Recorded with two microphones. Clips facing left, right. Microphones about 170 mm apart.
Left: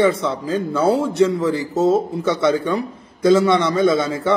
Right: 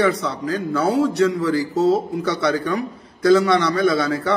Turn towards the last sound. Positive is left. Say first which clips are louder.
# left 2 dB
turn(degrees=20)  # may be behind; listen again after turning